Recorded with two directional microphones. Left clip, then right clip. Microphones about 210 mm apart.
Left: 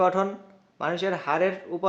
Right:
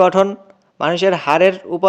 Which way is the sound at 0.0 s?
40° right (ahead or behind).